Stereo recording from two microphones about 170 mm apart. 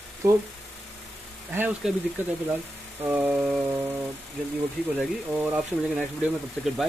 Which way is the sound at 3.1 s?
10° right (ahead or behind).